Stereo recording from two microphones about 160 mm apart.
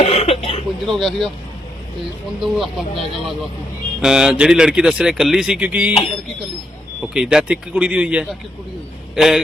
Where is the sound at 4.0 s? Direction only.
5° right (ahead or behind).